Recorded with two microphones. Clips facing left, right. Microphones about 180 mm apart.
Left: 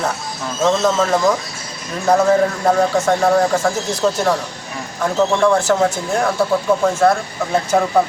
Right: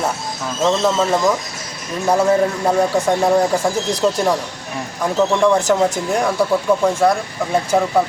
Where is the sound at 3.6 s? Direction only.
15° right (ahead or behind).